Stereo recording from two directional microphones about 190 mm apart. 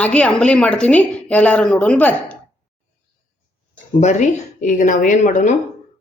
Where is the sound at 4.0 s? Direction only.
40° left (ahead or behind).